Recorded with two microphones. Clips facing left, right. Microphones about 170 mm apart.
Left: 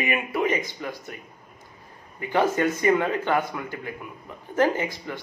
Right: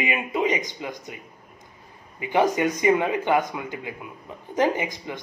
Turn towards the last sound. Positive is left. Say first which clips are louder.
# even
turn(degrees=-15)  # may be behind; listen again after turning